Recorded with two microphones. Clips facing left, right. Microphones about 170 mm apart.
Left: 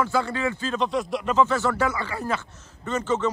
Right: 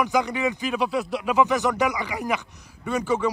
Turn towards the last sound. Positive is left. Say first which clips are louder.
# right 1 dB
turn(degrees=-10)  # may be behind; listen again after turning